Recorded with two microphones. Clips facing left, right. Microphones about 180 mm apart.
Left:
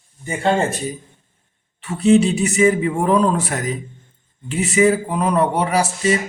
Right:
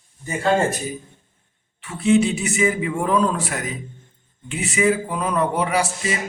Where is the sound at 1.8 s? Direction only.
35° left (ahead or behind).